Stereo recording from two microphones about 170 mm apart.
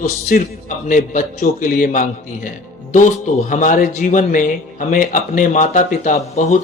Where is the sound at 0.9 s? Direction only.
50° left (ahead or behind).